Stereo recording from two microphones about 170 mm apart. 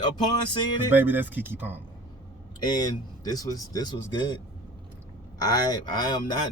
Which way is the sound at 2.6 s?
25° left (ahead or behind).